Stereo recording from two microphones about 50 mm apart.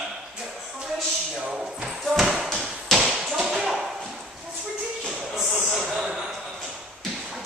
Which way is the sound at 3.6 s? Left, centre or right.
Centre.